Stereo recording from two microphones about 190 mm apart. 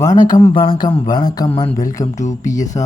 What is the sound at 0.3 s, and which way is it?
Speech, 30° left (ahead or behind).